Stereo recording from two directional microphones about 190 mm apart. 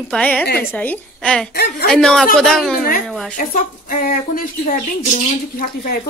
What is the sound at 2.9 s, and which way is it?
Speech, 45° left (ahead or behind).